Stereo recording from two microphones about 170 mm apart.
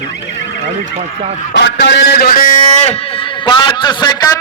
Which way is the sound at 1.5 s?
85° left.